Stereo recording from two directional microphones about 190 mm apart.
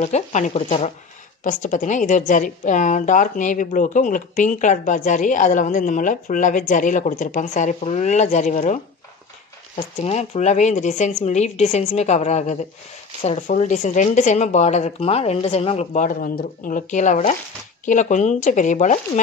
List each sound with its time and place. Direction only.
0.0 s a woman's voice: 40° left (ahead or behind)
1.4 s a woman's voice: 40° left (ahead or behind)
10.0 s a woman's voice: 35° left (ahead or behind)